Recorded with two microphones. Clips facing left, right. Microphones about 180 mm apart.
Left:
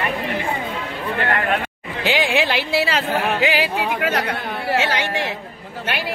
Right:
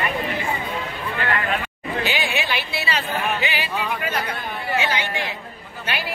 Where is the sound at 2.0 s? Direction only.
90° left.